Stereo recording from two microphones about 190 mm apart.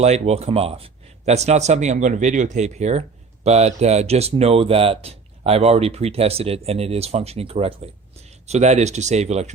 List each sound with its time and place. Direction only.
0.0 s speech: 35° right (ahead or behind)